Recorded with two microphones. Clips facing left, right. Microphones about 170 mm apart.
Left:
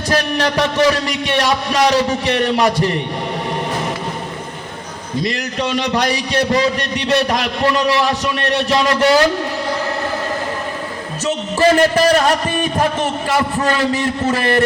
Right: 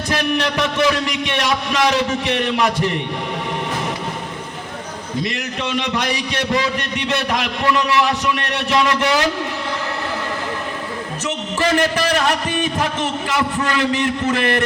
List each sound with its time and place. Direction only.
0.1 s a man's voice: 35° left (ahead or behind)
5.2 s a man's voice: 35° left (ahead or behind)
11.6 s a man's voice: 40° left (ahead or behind)